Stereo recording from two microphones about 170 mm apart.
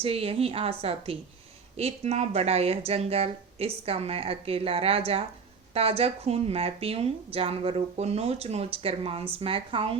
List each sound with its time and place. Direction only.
0.0 s speech: 35° right (ahead or behind)